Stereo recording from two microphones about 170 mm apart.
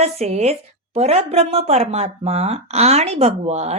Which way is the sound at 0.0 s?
40° right (ahead or behind).